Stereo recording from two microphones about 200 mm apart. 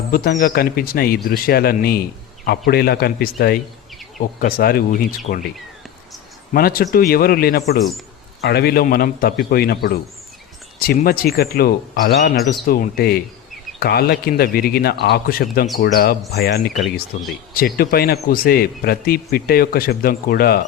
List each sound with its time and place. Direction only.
0.1 s a man's voice: 45° left (ahead or behind)
6.5 s a man's voice: 50° left (ahead or behind)